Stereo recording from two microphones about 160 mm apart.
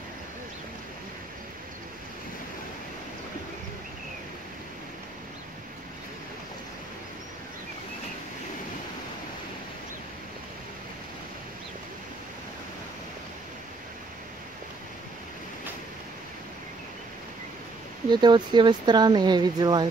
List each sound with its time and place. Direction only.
18.1 s speech: 30° right (ahead or behind)